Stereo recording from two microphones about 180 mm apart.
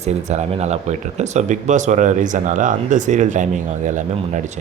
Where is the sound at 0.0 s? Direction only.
40° right (ahead or behind).